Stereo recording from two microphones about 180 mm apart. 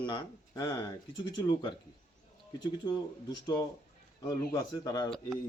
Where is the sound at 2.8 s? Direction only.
25° left (ahead or behind).